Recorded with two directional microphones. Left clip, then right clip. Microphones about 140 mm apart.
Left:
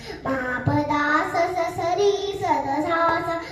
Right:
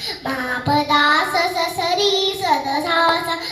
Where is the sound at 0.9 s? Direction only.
30° right (ahead or behind).